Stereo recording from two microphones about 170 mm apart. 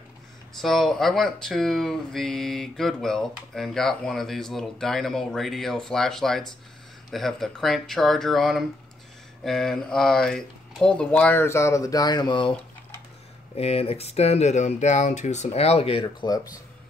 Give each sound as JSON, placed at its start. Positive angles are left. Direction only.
{"t": 0.6, "sound": "speech", "side_deg": 0}
{"t": 13.6, "sound": "speech", "side_deg": 35}